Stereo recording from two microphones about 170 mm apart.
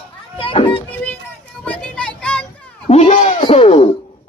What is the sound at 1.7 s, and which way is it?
Children playing, 5° left (ahead or behind).